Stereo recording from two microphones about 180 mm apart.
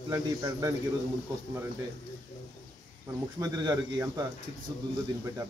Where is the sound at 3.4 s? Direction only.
20° right (ahead or behind).